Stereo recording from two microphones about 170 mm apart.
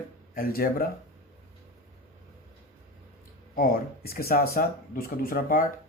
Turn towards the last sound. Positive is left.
turn(degrees=55)  # may be behind; listen again after turning